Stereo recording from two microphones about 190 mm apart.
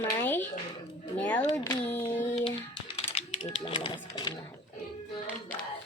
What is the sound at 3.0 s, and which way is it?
Typing, 30° left (ahead or behind).